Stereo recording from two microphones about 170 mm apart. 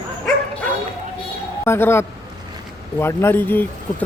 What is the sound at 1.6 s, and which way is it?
Speech, 15° left (ahead or behind).